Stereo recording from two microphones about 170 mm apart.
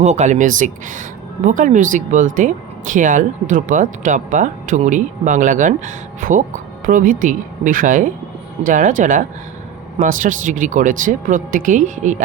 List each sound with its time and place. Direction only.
0.0 s speech: 40° right (ahead or behind)